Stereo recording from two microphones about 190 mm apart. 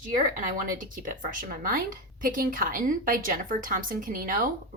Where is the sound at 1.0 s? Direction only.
45° right (ahead or behind).